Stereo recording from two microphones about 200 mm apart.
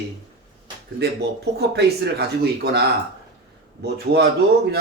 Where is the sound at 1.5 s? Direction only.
55° right (ahead or behind).